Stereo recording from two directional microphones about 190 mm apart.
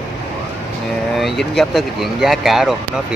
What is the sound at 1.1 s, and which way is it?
Speech, centre (ahead or behind).